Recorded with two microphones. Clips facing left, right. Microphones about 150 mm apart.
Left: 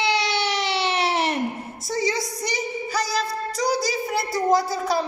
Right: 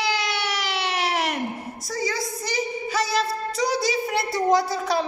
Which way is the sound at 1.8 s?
25° left (ahead or behind).